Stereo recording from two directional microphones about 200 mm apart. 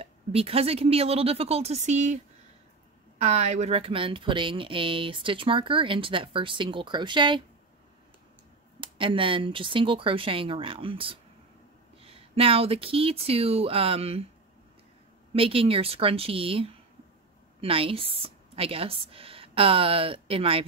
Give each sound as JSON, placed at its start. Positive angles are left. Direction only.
{"t": 0.0, "sound": "speech", "side_deg": -30}
{"t": 3.2, "sound": "speech", "side_deg": -35}
{"t": 8.8, "sound": "speech", "side_deg": -25}
{"t": 15.3, "sound": "speech", "side_deg": -25}